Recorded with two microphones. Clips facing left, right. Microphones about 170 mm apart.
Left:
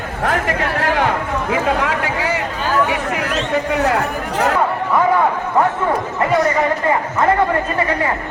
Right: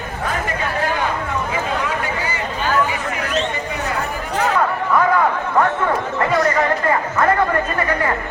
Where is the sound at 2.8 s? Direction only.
70° left (ahead or behind).